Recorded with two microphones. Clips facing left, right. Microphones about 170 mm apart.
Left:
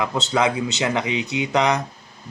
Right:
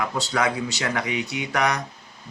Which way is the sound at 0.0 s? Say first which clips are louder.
Left 3 dB; 20° left (ahead or behind).